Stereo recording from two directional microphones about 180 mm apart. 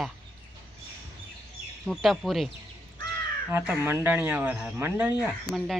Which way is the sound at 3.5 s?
10° right (ahead or behind).